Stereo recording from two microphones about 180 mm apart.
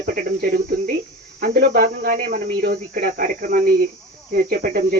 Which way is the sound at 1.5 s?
55° right (ahead or behind).